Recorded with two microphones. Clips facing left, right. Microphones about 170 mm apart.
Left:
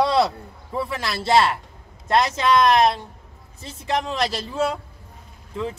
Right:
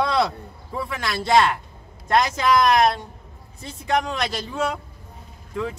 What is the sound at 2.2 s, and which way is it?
Speech, centre (ahead or behind).